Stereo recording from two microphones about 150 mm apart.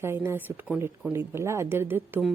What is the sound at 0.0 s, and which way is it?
A woman's voice, 15° right (ahead or behind).